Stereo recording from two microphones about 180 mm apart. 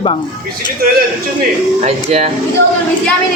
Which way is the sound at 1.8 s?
35° right (ahead or behind).